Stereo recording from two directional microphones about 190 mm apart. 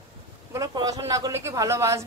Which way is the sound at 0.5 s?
20° right (ahead or behind).